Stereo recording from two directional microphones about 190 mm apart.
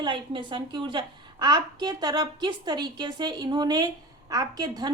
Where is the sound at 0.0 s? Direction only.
25° right (ahead or behind).